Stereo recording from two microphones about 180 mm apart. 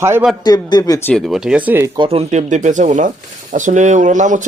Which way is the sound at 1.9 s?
30° right (ahead or behind).